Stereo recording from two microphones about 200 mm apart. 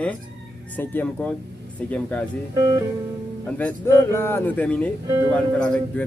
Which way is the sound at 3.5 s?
10° left (ahead or behind).